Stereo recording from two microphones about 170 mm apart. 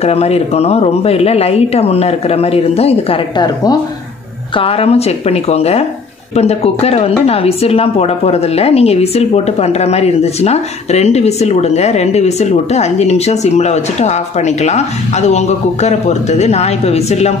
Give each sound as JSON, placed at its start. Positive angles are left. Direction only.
{"t": 0.0, "sound": "a woman's voice", "side_deg": 35}
{"t": 3.3, "sound": "speech", "side_deg": 25}
{"t": 4.6, "sound": "a woman's voice", "side_deg": 35}